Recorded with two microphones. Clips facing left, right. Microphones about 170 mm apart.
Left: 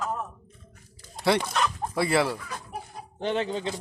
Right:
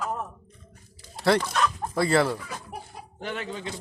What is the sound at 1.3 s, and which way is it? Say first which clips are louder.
Speech: right 1 dB; 15° left (ahead or behind).